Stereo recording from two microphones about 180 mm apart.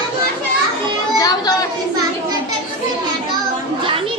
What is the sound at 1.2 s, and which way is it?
Chatter, 20° left (ahead or behind).